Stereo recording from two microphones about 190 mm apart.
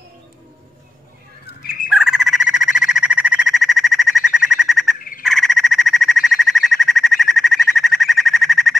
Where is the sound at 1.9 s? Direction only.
Centre (ahead or behind).